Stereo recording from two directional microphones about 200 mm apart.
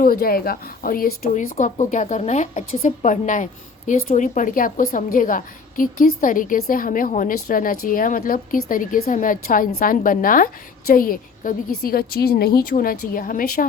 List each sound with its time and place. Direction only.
0.0 s a woman's voice: 45° left (ahead or behind)